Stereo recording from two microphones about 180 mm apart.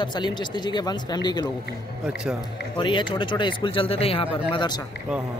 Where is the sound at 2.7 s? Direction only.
25° left (ahead or behind).